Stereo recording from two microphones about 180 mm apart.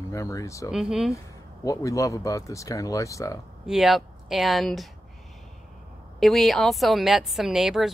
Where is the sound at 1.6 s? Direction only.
20° left (ahead or behind).